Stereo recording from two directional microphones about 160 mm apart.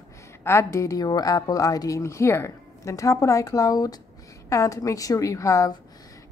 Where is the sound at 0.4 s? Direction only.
15° left (ahead or behind).